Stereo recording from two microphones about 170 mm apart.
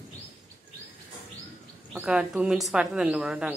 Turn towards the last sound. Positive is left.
turn(degrees=-5)  # may be behind; listen again after turning